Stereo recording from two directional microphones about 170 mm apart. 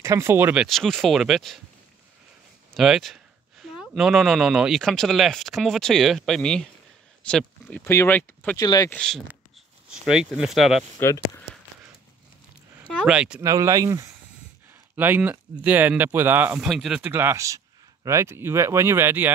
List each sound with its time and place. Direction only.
0.0 s speech: 15° right (ahead or behind)
0.7 s speech: centre (ahead or behind)
2.7 s a sound: centre (ahead or behind)
3.9 s speech: centre (ahead or behind)
7.8 s speech: 15° left (ahead or behind)
8.5 s speech: 20° left (ahead or behind)
8.9 s speech: 5° left (ahead or behind)
11.5 s a sound: 90° right
12.7 s speech: 5° right (ahead or behind)
13.4 s speech: 20° right (ahead or behind)